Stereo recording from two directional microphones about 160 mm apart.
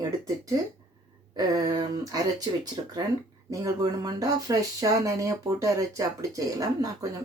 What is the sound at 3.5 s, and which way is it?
Speech, 20° right (ahead or behind).